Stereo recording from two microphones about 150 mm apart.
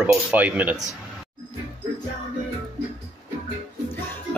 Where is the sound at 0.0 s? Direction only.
10° right (ahead or behind).